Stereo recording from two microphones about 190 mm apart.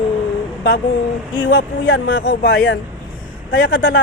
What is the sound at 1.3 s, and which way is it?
A man's voice, 75° left (ahead or behind).